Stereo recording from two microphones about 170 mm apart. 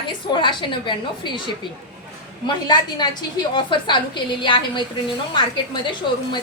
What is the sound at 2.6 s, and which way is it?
A woman's voice, 25° left (ahead or behind).